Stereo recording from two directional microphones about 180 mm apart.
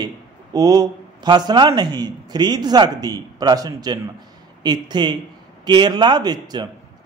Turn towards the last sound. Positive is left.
turn(degrees=-25)  # may be behind; listen again after turning